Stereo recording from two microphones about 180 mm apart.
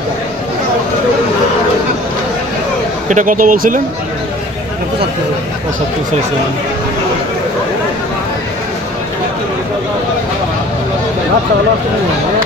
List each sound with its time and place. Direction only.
3.1 s speech: 45° right (ahead or behind)